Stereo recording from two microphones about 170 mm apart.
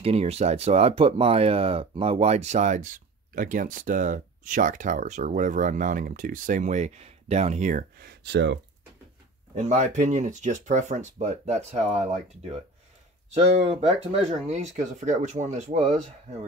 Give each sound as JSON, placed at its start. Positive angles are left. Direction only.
{"t": 0.0, "sound": "speech", "side_deg": -35}
{"t": 9.6, "sound": "speech", "side_deg": -45}